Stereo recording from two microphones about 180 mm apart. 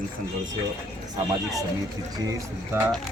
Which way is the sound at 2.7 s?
15° right (ahead or behind).